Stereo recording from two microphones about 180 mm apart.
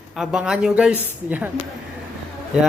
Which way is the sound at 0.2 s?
5° right (ahead or behind).